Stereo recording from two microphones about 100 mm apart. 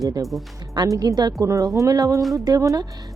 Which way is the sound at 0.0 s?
35° right (ahead or behind).